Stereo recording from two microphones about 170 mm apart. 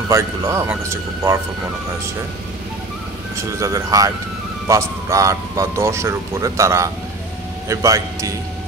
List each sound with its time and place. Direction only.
0.1 s a man's voice: 15° right (ahead or behind)
3.3 s a man's voice: 15° right (ahead or behind)